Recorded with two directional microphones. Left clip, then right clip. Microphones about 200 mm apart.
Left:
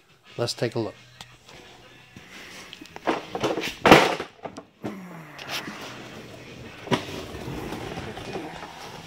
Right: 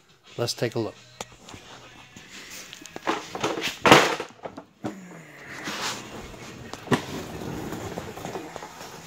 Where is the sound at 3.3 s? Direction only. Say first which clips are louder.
Left 2 dB; 40° left (ahead or behind).